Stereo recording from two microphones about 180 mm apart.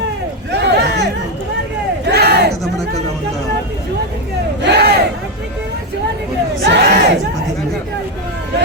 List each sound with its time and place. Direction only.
0.5 s a sound: 70° right (ahead or behind)
2.0 s battle cry: 65° right (ahead or behind)
4.6 s crowd: 65° right (ahead or behind)
6.7 s crowd: 60° right (ahead or behind)